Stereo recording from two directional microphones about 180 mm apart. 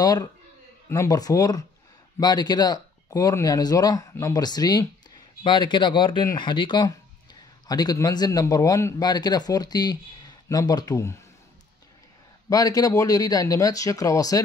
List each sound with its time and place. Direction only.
0.0 s a man's voice: 20° left (ahead or behind)
12.4 s a man's voice: 20° left (ahead or behind)